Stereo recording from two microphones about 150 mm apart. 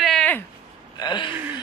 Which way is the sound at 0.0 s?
5° left (ahead or behind).